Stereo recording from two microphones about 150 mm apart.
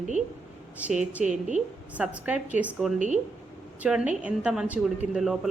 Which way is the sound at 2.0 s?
10° right (ahead or behind).